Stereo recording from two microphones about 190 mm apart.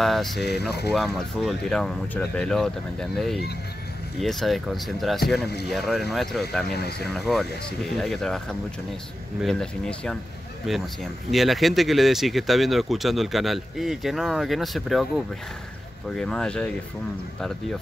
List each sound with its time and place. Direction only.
0.0 s speech: centre (ahead or behind)
0.4 s speech: 60° left (ahead or behind)
0.9 s speech: centre (ahead or behind)
6.7 s speech: 60° left (ahead or behind)
7.2 s speech: centre (ahead or behind)